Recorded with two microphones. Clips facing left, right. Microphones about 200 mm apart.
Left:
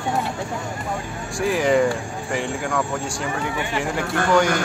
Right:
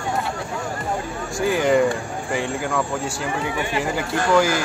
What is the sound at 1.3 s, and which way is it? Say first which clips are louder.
Speech: right 1 dB; centre (ahead or behind).